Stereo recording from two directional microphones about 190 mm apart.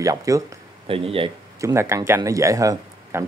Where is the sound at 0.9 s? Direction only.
30° right (ahead or behind).